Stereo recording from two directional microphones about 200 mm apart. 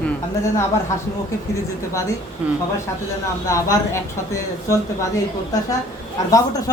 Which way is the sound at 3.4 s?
15° left (ahead or behind).